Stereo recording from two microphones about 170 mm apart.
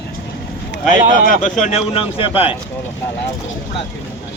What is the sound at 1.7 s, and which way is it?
Speech, 35° left (ahead or behind).